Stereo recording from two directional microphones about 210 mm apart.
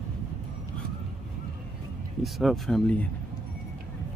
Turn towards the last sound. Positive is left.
turn(degrees=5)  # may be behind; listen again after turning